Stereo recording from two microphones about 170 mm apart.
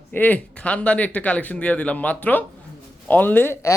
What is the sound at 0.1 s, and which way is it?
Speech, 10° left (ahead or behind).